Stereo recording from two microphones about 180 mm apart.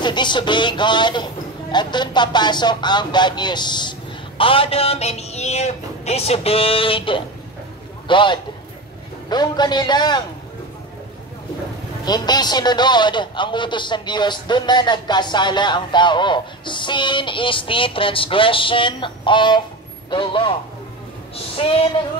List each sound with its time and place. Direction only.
0.0 s a man's voice: 25° left (ahead or behind)
12.0 s a man's voice: 25° left (ahead or behind)
21.5 s speech: 30° left (ahead or behind)